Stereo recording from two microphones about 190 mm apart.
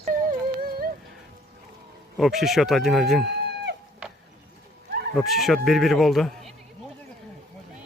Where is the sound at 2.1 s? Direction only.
Centre (ahead or behind).